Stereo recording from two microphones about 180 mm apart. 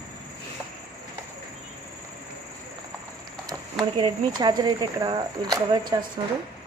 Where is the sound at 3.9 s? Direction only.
25° right (ahead or behind).